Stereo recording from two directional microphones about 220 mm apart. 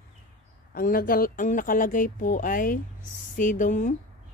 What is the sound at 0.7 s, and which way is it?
Speech, 40° left (ahead or behind).